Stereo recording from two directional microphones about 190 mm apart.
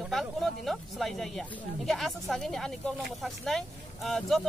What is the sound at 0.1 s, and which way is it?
Speech, centre (ahead or behind).